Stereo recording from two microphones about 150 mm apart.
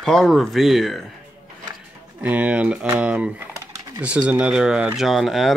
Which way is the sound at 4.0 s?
10° right (ahead or behind).